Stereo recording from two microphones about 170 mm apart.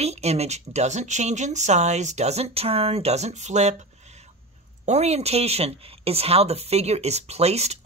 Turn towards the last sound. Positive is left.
turn(degrees=-40)  # may be behind; listen again after turning